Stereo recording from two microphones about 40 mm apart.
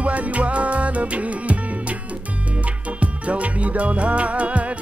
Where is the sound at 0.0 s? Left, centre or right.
Right.